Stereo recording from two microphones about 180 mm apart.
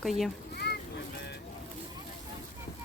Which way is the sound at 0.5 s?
65° left (ahead or behind).